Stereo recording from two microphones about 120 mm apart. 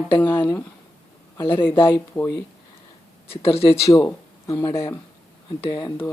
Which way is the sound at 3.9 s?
25° left (ahead or behind).